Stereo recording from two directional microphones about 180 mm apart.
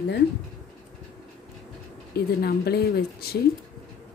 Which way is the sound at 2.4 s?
60° left (ahead or behind).